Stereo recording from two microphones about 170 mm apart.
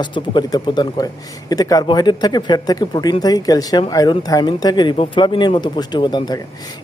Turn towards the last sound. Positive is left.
turn(degrees=25)  # may be behind; listen again after turning